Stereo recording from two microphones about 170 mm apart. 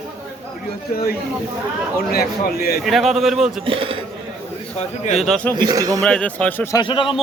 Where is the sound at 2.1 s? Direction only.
65° left (ahead or behind).